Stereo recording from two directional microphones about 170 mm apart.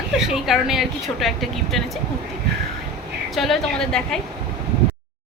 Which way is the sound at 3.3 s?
Centre (ahead or behind).